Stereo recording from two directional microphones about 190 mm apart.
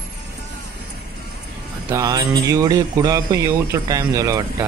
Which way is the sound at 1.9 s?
15° right (ahead or behind).